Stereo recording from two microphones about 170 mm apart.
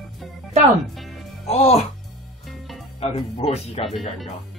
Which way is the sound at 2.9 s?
35° left (ahead or behind).